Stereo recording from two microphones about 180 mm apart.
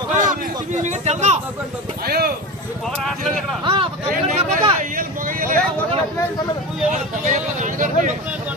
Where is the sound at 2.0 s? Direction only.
60° right (ahead or behind).